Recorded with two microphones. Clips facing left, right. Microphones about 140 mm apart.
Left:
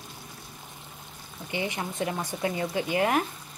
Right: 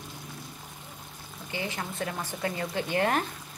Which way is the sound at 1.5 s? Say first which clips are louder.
Left 3 dB; 20° left (ahead or behind).